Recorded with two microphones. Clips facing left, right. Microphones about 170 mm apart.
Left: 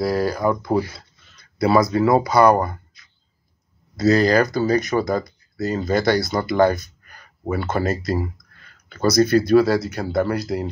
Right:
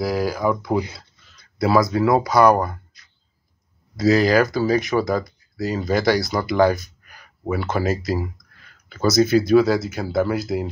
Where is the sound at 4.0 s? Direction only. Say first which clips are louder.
Even; centre (ahead or behind).